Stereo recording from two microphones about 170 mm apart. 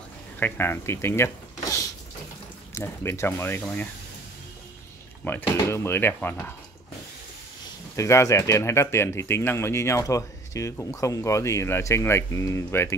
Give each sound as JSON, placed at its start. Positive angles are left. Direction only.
{"t": 0.4, "sound": "speech", "side_deg": 15}
{"t": 5.2, "sound": "speech", "side_deg": 10}
{"t": 7.9, "sound": "speech", "side_deg": 15}